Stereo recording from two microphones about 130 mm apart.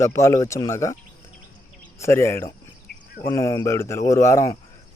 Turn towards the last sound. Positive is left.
turn(degrees=20)  # may be behind; listen again after turning